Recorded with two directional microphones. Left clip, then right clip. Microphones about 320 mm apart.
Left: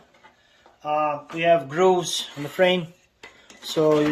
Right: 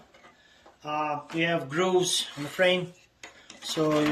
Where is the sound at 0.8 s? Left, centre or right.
Centre.